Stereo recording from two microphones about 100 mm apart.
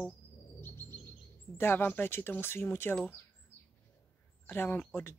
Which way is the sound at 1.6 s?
20° left (ahead or behind).